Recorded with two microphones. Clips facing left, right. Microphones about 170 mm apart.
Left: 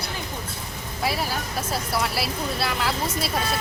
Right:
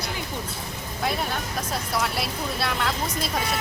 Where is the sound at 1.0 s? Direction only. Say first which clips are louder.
Left 1 dB; 5° left (ahead or behind).